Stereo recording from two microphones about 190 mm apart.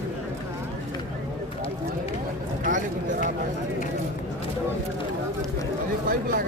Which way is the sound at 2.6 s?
45° right (ahead or behind).